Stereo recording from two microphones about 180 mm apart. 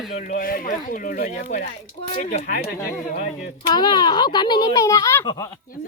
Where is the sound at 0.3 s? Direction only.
50° left (ahead or behind).